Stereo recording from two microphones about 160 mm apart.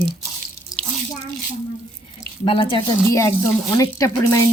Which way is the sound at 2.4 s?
35° left (ahead or behind).